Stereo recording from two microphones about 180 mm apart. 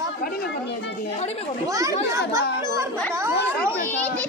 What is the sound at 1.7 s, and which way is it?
Speech, 20° right (ahead or behind).